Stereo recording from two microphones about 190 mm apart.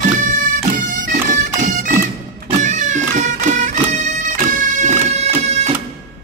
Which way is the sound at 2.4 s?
40° right (ahead or behind).